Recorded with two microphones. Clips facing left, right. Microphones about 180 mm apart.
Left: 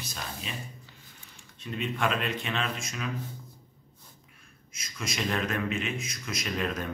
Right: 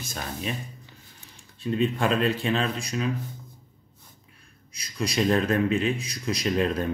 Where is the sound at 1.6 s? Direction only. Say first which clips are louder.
Right 7 dB; 35° right (ahead or behind).